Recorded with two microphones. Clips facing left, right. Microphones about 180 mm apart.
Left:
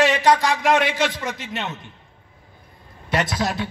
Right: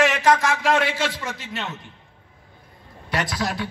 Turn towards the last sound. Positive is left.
turn(degrees=25)  # may be behind; listen again after turning